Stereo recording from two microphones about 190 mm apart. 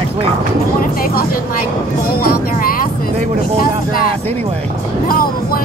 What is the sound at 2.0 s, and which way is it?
Music, 50° left (ahead or behind).